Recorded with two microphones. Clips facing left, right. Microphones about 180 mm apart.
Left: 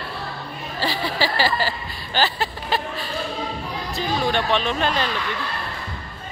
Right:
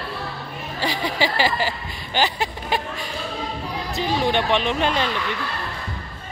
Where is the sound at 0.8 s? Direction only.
20° right (ahead or behind).